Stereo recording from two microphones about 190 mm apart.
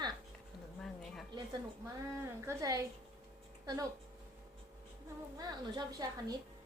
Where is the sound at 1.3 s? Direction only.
20° right (ahead or behind).